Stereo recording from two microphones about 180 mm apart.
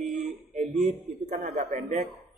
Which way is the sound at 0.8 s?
40° right (ahead or behind).